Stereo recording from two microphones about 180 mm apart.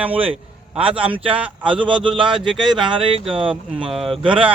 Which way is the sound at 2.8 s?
30° right (ahead or behind).